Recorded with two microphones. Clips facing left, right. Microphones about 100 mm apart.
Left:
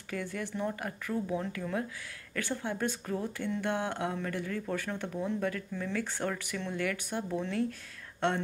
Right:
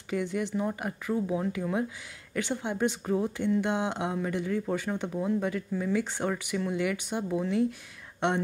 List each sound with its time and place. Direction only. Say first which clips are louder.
0.1 s speech: right 6 dB; 20° right (ahead or behind)